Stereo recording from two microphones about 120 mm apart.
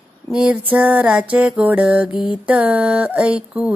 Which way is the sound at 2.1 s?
45° left (ahead or behind).